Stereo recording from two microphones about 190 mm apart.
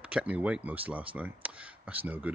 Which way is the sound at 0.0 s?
5° right (ahead or behind).